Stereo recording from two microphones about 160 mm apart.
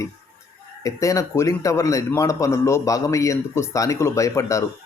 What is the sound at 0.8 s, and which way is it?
A man's voice, 20° left (ahead or behind).